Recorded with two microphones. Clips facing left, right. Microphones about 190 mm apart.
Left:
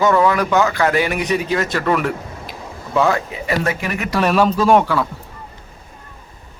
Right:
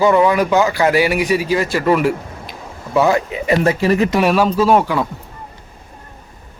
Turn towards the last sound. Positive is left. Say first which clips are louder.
# even
turn(degrees=-5)  # may be behind; listen again after turning